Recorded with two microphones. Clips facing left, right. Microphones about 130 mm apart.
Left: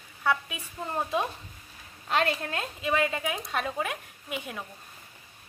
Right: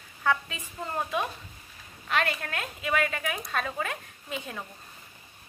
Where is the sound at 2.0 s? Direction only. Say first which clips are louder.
Left 2 dB; 30° left (ahead or behind); by 4.6 s 10° left (ahead or behind).